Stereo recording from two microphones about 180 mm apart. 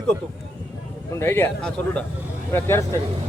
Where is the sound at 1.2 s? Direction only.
10° left (ahead or behind).